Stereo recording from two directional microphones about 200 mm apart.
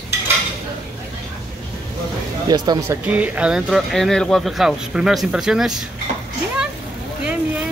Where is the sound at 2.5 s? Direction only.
20° right (ahead or behind).